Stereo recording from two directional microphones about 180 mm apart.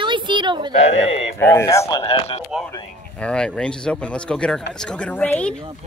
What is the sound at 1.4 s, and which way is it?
Speech, 15° left (ahead or behind).